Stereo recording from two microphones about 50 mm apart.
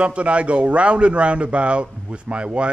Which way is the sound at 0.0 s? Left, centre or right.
Right.